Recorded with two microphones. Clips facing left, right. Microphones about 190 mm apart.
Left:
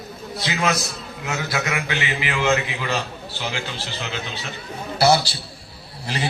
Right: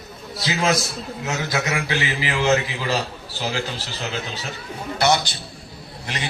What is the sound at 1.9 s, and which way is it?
A man's voice, 35° right (ahead or behind).